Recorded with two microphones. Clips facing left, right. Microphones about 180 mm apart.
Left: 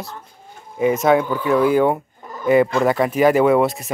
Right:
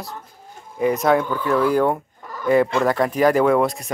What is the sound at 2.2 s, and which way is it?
Fowl, 20° left (ahead or behind).